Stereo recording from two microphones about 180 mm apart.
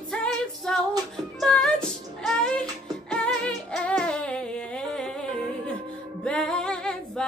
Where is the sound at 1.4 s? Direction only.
5° left (ahead or behind).